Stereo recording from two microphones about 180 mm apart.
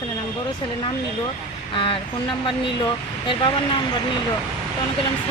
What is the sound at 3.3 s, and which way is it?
Speech, 25° left (ahead or behind).